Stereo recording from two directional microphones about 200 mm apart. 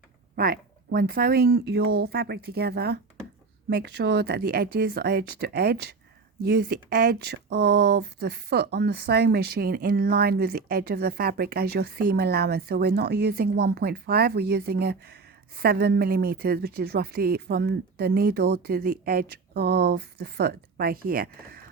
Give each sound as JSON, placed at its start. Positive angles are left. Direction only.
{"t": 0.3, "sound": "speech", "side_deg": -45}